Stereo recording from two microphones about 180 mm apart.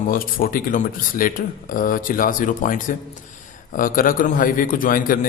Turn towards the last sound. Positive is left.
turn(degrees=50)  # may be behind; listen again after turning